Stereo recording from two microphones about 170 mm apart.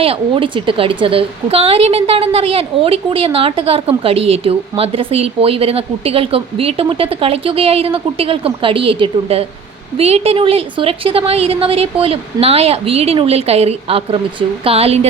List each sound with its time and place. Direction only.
0.0 s a woman's voice: 35° right (ahead or behind)